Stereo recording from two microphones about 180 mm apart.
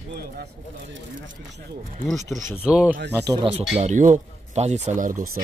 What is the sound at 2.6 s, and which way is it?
Speech, 5° right (ahead or behind).